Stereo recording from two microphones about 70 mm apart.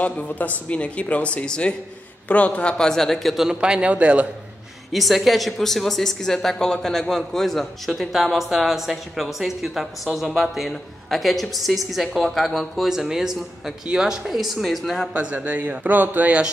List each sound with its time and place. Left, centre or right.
0.0 s speech: left; by 3.4 s centre
3.4 s a man's voice: centre
4.9 s speech: centre
15.2 s a man's voice: right